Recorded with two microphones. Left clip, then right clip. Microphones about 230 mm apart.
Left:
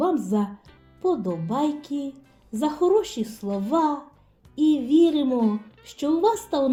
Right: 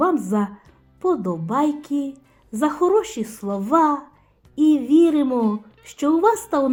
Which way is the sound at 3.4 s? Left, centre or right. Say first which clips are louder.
Right 5 dB; right.